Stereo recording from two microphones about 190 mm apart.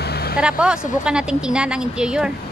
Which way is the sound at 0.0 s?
55° left (ahead or behind).